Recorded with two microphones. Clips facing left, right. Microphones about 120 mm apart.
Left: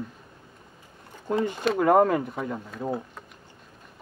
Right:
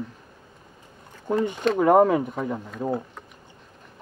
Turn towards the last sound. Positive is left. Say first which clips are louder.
# right 3 dB
turn(degrees=-15)  # may be behind; listen again after turning